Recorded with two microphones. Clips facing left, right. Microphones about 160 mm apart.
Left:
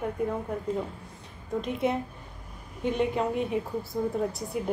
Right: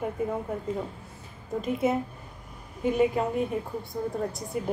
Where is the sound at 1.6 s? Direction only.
Centre (ahead or behind).